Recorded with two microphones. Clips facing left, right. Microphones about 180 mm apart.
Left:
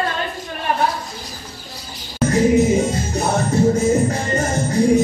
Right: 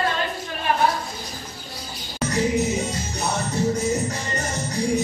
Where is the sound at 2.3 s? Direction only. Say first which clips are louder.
Left 8 dB; 50° left (ahead or behind).